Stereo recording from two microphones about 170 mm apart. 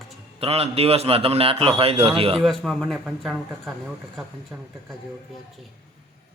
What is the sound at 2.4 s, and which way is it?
Speech, centre (ahead or behind).